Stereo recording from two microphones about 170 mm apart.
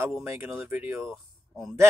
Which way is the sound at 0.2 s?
10° right (ahead or behind).